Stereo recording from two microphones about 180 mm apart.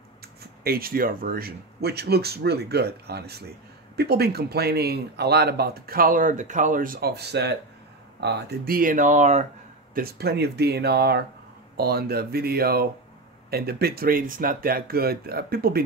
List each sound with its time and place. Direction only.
0.7 s speech: 55° right (ahead or behind)
9.9 s speech: 60° right (ahead or behind)